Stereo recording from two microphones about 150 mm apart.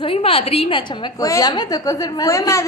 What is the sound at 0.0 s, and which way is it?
A woman's voice, 40° left (ahead or behind).